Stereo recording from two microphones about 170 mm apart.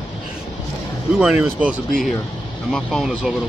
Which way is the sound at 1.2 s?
5° right (ahead or behind).